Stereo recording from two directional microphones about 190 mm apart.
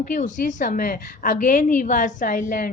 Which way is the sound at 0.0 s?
40° left (ahead or behind).